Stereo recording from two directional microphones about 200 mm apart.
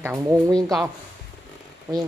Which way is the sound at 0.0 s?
15° right (ahead or behind).